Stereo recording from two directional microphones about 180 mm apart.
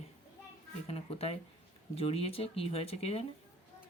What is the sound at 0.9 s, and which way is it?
Speech, 35° left (ahead or behind).